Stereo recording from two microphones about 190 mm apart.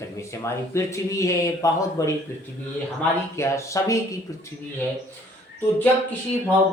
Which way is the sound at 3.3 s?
15° left (ahead or behind).